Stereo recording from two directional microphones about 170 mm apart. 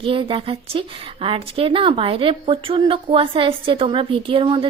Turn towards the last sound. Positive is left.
turn(degrees=-30)  # may be behind; listen again after turning